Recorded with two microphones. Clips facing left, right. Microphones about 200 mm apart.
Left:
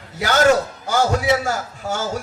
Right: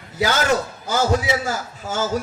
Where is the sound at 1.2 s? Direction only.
65° left (ahead or behind).